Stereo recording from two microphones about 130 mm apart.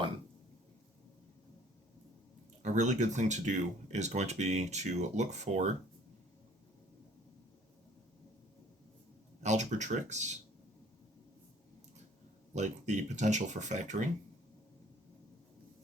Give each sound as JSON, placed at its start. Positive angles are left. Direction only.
{"t": 2.6, "sound": "speech", "side_deg": -70}
{"t": 9.4, "sound": "speech", "side_deg": -65}
{"t": 12.5, "sound": "speech", "side_deg": -65}